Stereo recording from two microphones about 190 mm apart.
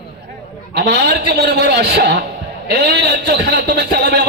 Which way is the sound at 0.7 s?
55° right (ahead or behind).